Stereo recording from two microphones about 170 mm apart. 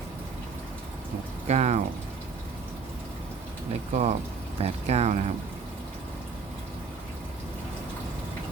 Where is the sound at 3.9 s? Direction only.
45° right (ahead or behind).